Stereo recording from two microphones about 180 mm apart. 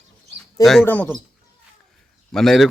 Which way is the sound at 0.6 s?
Centre (ahead or behind).